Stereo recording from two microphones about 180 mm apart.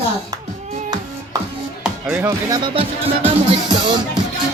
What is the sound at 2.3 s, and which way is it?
Speech, 20° right (ahead or behind).